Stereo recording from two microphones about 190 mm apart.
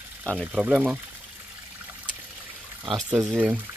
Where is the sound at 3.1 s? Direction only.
5° right (ahead or behind).